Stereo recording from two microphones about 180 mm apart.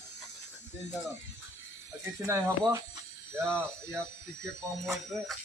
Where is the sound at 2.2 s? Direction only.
15° right (ahead or behind).